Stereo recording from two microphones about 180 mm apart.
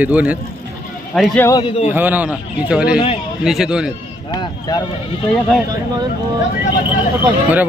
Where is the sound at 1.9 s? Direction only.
10° right (ahead or behind).